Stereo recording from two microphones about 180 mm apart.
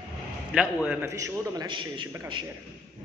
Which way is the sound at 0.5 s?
5° right (ahead or behind).